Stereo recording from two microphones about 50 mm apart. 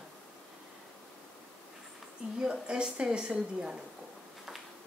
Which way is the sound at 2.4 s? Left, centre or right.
Centre.